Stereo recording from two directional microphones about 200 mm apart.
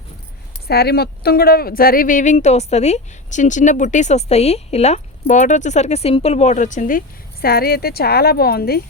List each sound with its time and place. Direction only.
0.7 s speech: 50° left (ahead or behind)